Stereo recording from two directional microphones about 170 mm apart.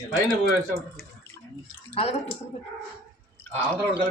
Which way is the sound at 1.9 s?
35° left (ahead or behind).